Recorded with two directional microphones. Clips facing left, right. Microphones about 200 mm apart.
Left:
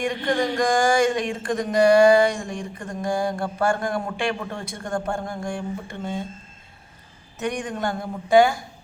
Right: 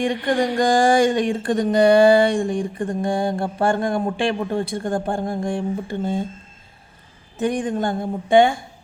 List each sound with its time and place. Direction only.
0.0 s speech: 30° right (ahead or behind)
7.3 s speech: 30° right (ahead or behind)